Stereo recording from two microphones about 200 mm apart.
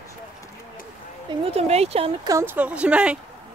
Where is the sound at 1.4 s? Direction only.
30° right (ahead or behind).